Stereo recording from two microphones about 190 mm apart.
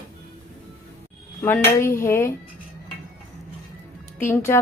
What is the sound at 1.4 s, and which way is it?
Speech, 10° left (ahead or behind).